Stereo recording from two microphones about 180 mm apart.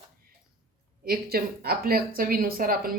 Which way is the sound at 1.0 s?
55° right (ahead or behind).